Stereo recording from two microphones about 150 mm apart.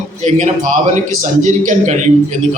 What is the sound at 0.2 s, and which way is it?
A man's voice, 50° right (ahead or behind).